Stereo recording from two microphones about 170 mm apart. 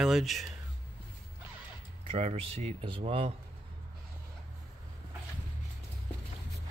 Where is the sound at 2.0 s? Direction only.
35° right (ahead or behind).